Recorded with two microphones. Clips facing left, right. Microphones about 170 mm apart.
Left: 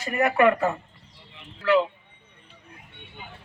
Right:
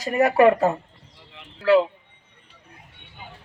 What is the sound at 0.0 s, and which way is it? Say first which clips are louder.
Speech: right 4 dB; 35° right (ahead or behind).